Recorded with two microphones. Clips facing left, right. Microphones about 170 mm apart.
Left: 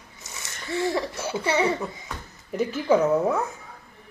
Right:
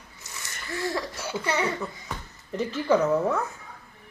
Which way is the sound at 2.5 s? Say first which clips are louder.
Left 2 dB; 10° left (ahead or behind).